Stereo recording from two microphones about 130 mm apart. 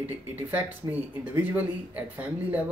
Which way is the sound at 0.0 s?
15° right (ahead or behind).